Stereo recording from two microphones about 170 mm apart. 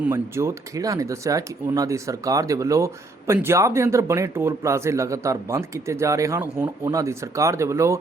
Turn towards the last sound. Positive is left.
turn(degrees=-15)  # may be behind; listen again after turning